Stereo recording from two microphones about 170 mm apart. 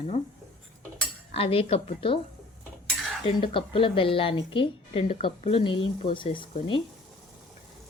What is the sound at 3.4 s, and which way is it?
A woman's voice, 30° left (ahead or behind).